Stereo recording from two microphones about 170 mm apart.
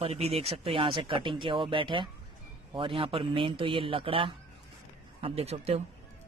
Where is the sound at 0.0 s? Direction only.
35° right (ahead or behind).